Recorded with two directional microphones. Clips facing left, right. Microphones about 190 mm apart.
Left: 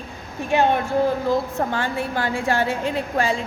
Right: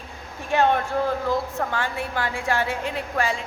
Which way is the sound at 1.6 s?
30° left (ahead or behind).